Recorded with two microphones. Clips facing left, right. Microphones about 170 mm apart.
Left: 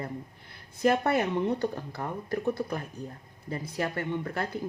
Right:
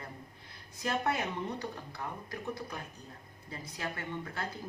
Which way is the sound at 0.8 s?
55° left (ahead or behind).